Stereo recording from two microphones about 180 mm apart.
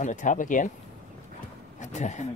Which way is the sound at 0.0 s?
45° left (ahead or behind).